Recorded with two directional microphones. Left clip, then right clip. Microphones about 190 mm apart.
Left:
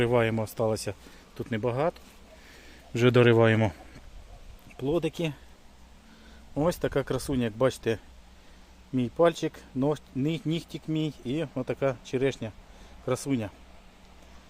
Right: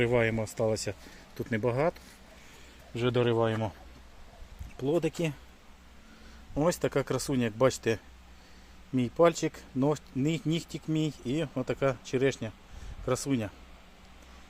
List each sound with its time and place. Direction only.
0.0 s speech: 15° left (ahead or behind); by 2.0 s 5° right (ahead or behind)
2.9 s a man's voice: 50° left (ahead or behind)
4.8 s speech: centre (ahead or behind)
6.5 s speech: centre (ahead or behind)